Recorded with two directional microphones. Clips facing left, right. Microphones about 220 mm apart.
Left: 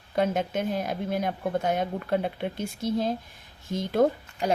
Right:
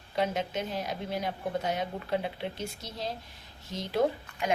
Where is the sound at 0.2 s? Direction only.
50° left (ahead or behind).